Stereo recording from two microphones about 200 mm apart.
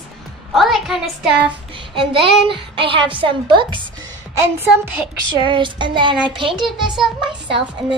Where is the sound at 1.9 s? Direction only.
25° right (ahead or behind).